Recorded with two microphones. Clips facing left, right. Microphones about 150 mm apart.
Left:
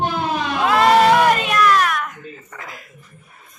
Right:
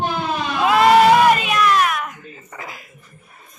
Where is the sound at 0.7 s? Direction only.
10° right (ahead or behind).